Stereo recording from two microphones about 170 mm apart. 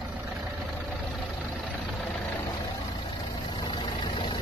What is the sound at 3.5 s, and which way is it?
Vehicle, 25° left (ahead or behind).